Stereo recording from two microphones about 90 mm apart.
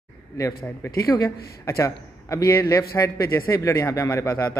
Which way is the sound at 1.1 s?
40° left (ahead or behind).